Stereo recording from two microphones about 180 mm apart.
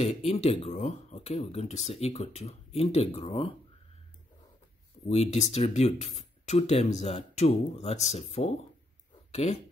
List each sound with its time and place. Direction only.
0.0 s speech: 35° left (ahead or behind)
5.0 s speech: 35° left (ahead or behind)